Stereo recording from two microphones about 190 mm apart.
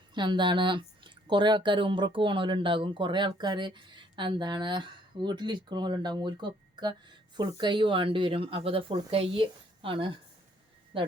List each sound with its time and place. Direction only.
0.1 s speech: 25° right (ahead or behind)